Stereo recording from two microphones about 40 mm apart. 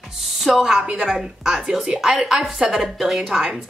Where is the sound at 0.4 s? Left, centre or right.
Centre.